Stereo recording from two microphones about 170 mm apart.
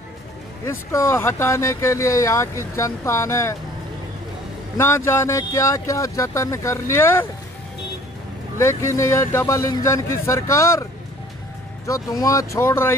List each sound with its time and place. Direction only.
0.7 s speech: 15° left (ahead or behind)
4.7 s speech: 15° left (ahead or behind)
8.5 s speech: 15° left (ahead or behind)